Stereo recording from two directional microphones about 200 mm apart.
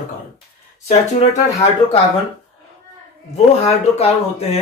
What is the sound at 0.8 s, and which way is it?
Speech, 35° left (ahead or behind).